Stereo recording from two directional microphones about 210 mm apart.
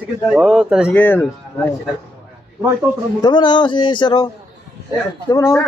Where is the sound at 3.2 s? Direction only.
20° left (ahead or behind).